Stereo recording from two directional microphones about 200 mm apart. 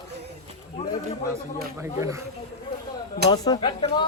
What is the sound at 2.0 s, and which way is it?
Speech, 15° right (ahead or behind).